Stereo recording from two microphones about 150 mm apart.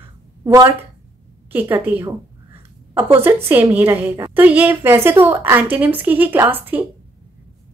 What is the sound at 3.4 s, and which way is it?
A woman's voice, 15° right (ahead or behind).